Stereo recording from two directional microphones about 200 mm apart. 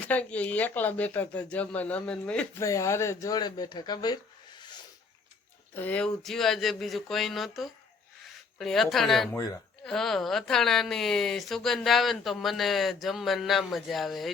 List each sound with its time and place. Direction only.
0.0 s speech: 5° left (ahead or behind)
5.7 s a woman's voice: 10° left (ahead or behind)